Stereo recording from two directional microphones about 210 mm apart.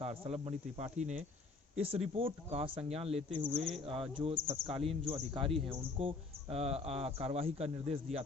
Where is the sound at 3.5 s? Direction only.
Centre (ahead or behind).